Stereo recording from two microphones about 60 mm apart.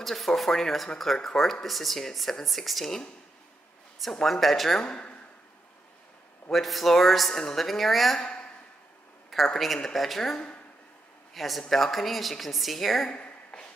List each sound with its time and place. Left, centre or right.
0.0 s speech: centre
4.0 s speech: centre
4.8 s speech: centre
6.5 s speech: centre
9.3 s a man's voice: centre
13.0 s a sound: centre